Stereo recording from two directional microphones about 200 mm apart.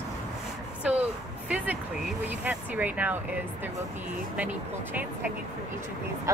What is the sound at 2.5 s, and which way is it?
Speech, 10° right (ahead or behind).